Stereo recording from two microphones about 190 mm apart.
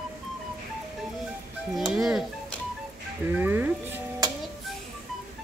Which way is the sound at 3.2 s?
10° right (ahead or behind).